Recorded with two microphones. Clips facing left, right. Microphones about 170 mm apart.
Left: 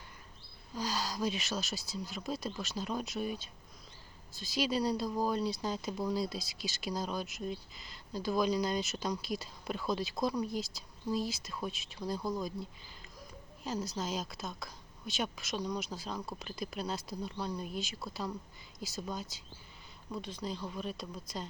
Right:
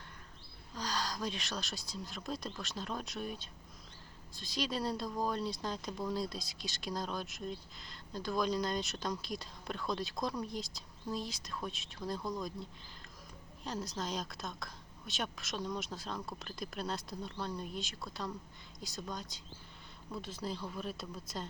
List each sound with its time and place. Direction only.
0.7 s speech: 5° left (ahead or behind)
13.7 s speech: centre (ahead or behind)